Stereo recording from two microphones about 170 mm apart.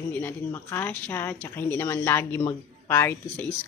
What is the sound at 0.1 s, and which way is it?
Speech, 10° left (ahead or behind).